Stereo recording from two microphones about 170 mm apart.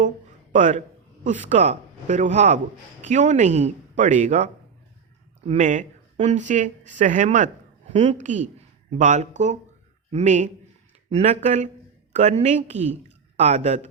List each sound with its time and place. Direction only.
0.5 s a man's voice: 45° right (ahead or behind)